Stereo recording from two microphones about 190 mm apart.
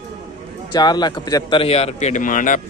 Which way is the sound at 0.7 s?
20° left (ahead or behind).